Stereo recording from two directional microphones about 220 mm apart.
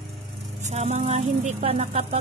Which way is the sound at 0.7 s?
30° right (ahead or behind).